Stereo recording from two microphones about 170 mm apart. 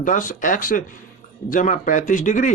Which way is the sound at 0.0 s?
50° left (ahead or behind).